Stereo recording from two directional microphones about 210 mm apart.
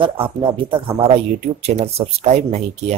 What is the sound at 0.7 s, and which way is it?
Speech, 25° right (ahead or behind).